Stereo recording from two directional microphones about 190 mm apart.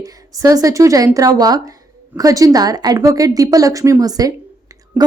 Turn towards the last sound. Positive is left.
turn(degrees=-10)  # may be behind; listen again after turning